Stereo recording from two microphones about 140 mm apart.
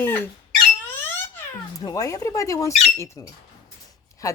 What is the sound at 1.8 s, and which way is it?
Speech, 25° left (ahead or behind).